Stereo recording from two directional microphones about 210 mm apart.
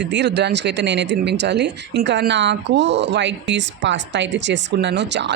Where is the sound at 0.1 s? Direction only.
55° right (ahead or behind).